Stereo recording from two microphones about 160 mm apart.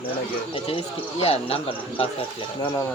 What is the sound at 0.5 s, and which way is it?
Speech, 35° left (ahead or behind).